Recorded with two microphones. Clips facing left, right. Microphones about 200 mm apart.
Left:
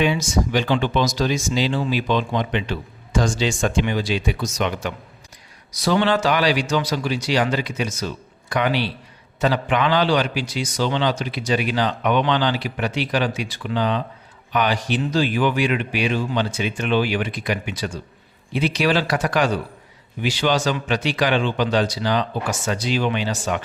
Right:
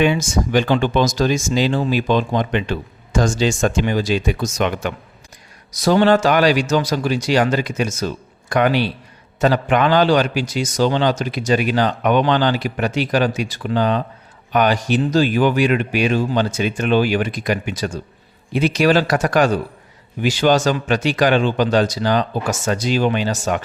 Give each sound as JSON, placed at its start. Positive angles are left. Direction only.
{"t": 0.0, "sound": "speech", "side_deg": -50}
{"t": 5.7, "sound": "speech", "side_deg": -45}